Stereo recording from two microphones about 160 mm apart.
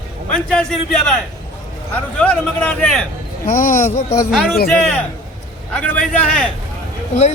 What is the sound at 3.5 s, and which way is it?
Speech, 60° left (ahead or behind).